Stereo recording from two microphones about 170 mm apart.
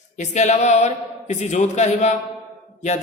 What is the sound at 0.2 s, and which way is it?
A man's voice, 40° left (ahead or behind).